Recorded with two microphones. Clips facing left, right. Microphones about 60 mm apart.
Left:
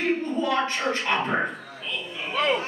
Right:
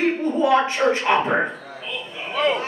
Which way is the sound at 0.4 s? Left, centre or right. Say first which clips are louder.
Right 10 dB; centre.